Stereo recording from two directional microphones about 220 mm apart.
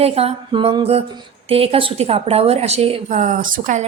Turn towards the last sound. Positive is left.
turn(degrees=-35)  # may be behind; listen again after turning